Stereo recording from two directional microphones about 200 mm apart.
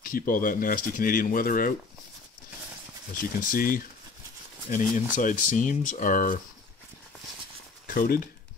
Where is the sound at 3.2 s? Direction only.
45° left (ahead or behind).